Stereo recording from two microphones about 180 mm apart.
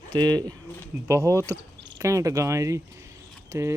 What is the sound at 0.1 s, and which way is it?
Speech, 25° right (ahead or behind).